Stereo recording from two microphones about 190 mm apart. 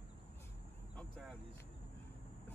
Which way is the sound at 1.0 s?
Centre (ahead or behind).